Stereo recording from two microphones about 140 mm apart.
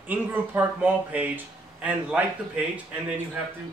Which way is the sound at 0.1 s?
15° right (ahead or behind).